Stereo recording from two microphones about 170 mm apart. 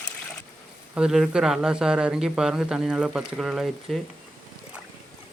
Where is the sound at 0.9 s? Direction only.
5° right (ahead or behind).